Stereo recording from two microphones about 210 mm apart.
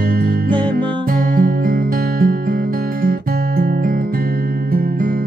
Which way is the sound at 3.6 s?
45° right (ahead or behind).